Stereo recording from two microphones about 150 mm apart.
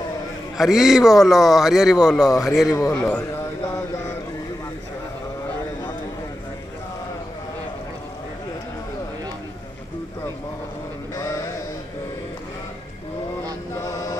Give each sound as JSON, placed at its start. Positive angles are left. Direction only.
{"t": 0.6, "sound": "a man's voice", "side_deg": 0}
{"t": 2.7, "sound": "a man's voice", "side_deg": 15}
{"t": 11.1, "sound": "a sound", "side_deg": 20}